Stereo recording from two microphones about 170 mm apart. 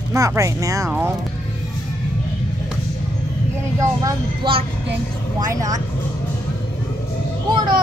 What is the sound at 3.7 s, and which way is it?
Speech, 20° right (ahead or behind).